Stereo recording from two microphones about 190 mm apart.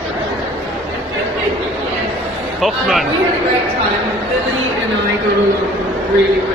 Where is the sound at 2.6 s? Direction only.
Centre (ahead or behind).